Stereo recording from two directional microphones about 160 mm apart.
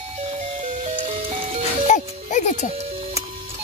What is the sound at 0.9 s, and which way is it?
Music, 35° right (ahead or behind).